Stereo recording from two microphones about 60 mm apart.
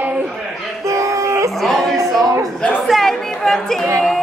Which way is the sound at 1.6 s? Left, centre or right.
Centre.